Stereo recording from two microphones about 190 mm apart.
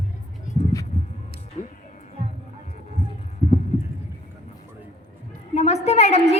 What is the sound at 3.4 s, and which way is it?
Clip-clop, 35° left (ahead or behind).